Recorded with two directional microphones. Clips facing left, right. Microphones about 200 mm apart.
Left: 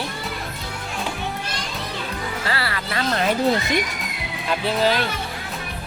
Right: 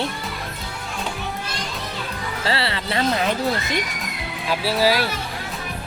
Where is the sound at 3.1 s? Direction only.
Centre (ahead or behind).